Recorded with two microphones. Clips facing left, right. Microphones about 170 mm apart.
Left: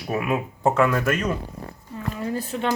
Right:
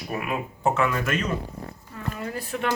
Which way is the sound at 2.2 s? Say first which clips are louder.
Left 3 dB; 25° left (ahead or behind).